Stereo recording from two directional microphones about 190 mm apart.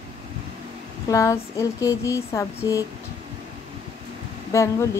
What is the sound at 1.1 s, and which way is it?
Speech, 15° left (ahead or behind).